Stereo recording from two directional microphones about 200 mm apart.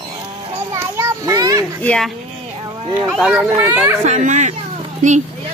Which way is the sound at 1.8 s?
5° left (ahead or behind).